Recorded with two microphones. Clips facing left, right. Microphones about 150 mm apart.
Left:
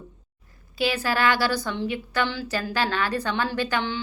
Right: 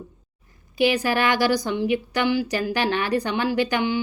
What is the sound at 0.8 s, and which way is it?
A woman's voice, 15° right (ahead or behind).